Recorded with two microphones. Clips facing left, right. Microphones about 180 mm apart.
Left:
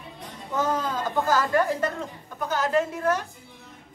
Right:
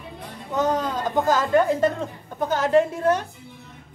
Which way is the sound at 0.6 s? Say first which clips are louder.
Right 3 dB; 20° right (ahead or behind).